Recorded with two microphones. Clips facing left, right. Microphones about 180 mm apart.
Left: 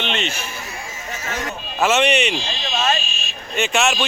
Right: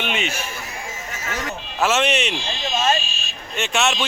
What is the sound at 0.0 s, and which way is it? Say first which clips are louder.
Speech: left 1 dB; 10° right (ahead or behind).